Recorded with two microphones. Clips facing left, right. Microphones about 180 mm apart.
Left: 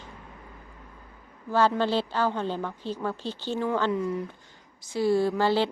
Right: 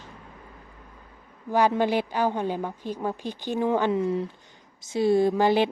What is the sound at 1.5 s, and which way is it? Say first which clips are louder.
A woman's voice: right 1 dB; 15° right (ahead or behind).